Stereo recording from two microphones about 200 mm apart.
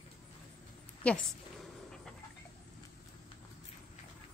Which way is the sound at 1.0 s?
Centre (ahead or behind).